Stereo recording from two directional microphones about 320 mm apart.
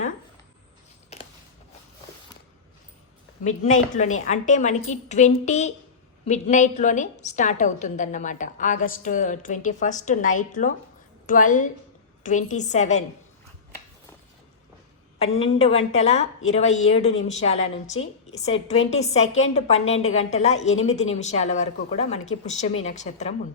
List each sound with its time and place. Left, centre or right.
1.1 s a sound: centre
3.4 s a woman's voice: left
15.2 s a woman's voice: centre